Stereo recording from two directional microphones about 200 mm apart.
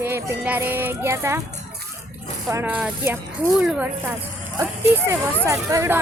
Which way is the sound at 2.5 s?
10° right (ahead or behind).